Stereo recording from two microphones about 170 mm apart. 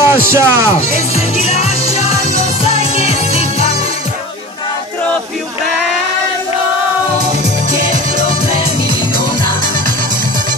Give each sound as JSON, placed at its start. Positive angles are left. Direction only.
{"t": 0.0, "sound": "speech", "side_deg": -15}
{"t": 0.9, "sound": "music", "side_deg": 40}